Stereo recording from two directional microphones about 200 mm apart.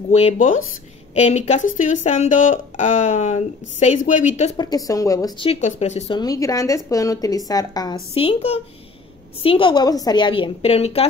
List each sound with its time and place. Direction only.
0.1 s speech: 30° left (ahead or behind)
4.6 s a woman's voice: 20° left (ahead or behind)
5.5 s speech: 35° left (ahead or behind)
6.1 s a woman's voice: 20° left (ahead or behind)
9.4 s a woman's voice: 25° left (ahead or behind)